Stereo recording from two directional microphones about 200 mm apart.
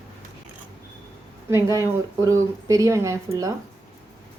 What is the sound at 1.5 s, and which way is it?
Speech, 15° right (ahead or behind).